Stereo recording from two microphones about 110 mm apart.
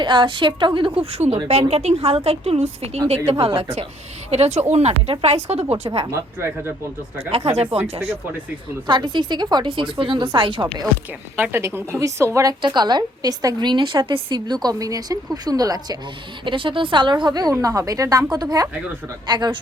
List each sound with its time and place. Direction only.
0.0 s a woman's voice: 45° right (ahead or behind)
1.1 s speech: 90° right
1.5 s a woman's voice: 75° right (ahead or behind)
3.2 s speech: 60° right (ahead or behind)
4.3 s a woman's voice: 75° right (ahead or behind)
6.1 s a woman's voice: 25° right (ahead or behind)
7.3 s a woman's voice: 70° right (ahead or behind)
8.9 s a woman's voice: 45° right (ahead or behind)
11.3 s a woman's voice: 20° right (ahead or behind)
12.6 s a woman's voice: 45° right (ahead or behind)
16.4 s a woman's voice: 50° right (ahead or behind)